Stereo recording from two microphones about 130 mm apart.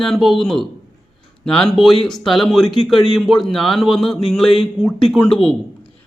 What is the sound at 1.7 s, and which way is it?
A man's voice, centre (ahead or behind).